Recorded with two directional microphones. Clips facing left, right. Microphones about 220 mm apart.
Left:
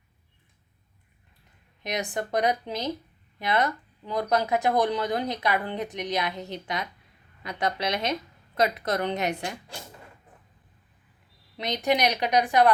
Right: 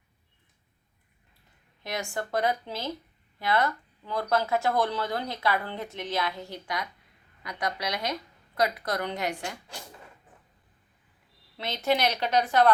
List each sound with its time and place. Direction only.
1.8 s a woman's voice: 20° left (ahead or behind)
11.5 s speech: 15° left (ahead or behind)